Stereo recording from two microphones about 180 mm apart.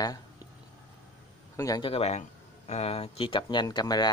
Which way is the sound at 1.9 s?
35° left (ahead or behind).